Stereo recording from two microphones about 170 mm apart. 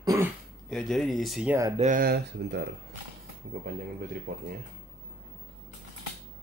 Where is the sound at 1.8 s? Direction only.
55° right (ahead or behind); by 2.6 s 70° right (ahead or behind).